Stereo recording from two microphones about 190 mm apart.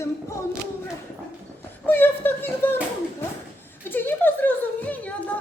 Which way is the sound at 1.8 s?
10° left (ahead or behind).